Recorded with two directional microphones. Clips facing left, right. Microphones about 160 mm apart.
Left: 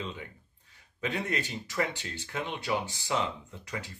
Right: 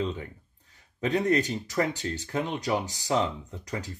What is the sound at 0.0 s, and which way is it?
Speech, 40° right (ahead or behind).